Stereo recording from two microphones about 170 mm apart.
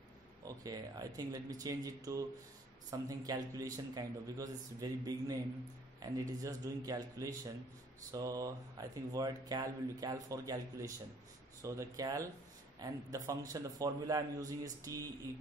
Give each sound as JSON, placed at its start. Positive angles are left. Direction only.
{"t": 0.5, "sound": "speech", "side_deg": -20}